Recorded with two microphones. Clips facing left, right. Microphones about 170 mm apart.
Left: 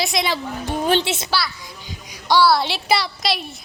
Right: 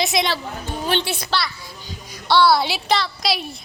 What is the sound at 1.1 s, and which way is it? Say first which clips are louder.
Speech: left 2 dB; 25° left (ahead or behind).